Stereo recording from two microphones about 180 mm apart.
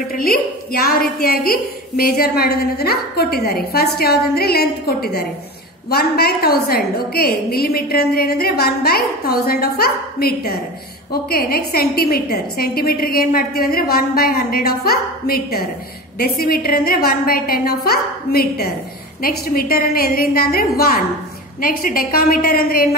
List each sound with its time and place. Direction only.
0.2 s a woman's voice: 55° left (ahead or behind)